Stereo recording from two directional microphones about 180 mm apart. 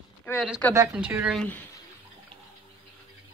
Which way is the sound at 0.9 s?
5° right (ahead or behind).